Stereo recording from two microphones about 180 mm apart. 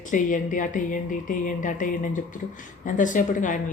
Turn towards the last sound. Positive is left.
turn(degrees=45)  # may be behind; listen again after turning